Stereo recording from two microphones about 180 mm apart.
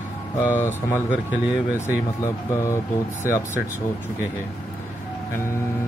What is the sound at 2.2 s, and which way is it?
Speech, 15° left (ahead or behind).